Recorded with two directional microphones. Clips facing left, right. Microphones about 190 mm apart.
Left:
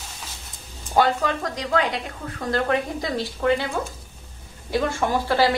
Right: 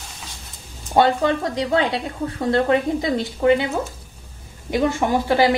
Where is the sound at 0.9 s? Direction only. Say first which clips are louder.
Right 4 dB; 25° right (ahead or behind).